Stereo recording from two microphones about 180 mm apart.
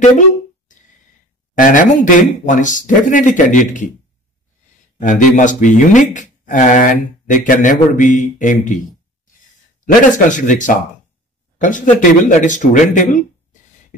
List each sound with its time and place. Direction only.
1.5 s speech: 45° left (ahead or behind)
4.9 s speech: 45° left (ahead or behind)
9.8 s speech: 45° left (ahead or behind)